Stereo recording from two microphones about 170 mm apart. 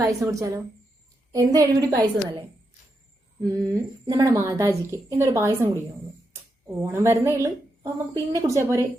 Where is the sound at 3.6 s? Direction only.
20° right (ahead or behind).